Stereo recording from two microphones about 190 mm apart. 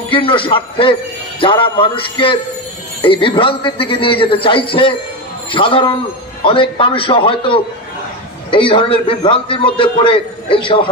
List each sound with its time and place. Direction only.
0.1 s a man's voice: 25° left (ahead or behind)